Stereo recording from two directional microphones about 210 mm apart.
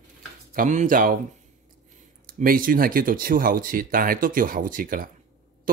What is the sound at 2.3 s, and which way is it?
Speech, 40° right (ahead or behind).